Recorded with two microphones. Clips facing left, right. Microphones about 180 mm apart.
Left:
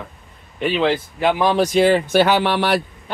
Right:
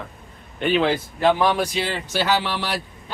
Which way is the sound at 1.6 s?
45° left (ahead or behind).